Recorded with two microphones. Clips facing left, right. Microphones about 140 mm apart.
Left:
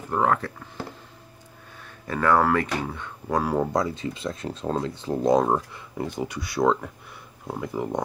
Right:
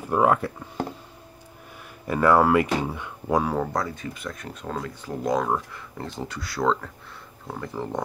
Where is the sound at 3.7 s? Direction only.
20° left (ahead or behind).